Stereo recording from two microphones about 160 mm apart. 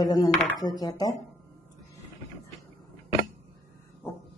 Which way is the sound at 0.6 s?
25° left (ahead or behind).